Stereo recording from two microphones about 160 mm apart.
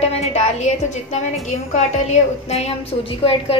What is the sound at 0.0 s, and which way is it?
A woman's voice, 40° left (ahead or behind).